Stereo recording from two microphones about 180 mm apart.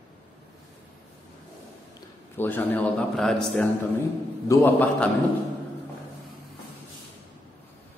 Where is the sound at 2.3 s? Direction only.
10° left (ahead or behind).